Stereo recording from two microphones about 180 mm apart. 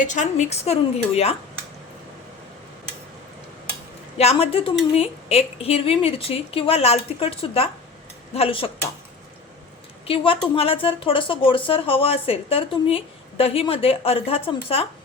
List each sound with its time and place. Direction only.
0.0 s speech: 40° left (ahead or behind)
4.2 s speech: 35° left (ahead or behind)
10.1 s speech: 30° left (ahead or behind)